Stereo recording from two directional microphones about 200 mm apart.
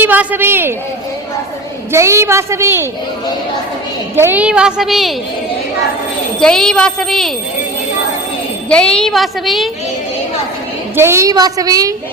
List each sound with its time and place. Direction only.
0.0 s a woman's voice: 10° right (ahead or behind)
1.9 s a woman's voice: 15° right (ahead or behind)
4.1 s a woman's voice: 10° right (ahead or behind)
6.4 s a woman's voice: 5° left (ahead or behind)
8.7 s a woman's voice: 5° left (ahead or behind)
10.9 s a woman's voice: 15° right (ahead or behind)